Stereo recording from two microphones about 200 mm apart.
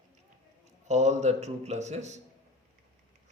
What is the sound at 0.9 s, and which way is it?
A man's voice, 35° right (ahead or behind).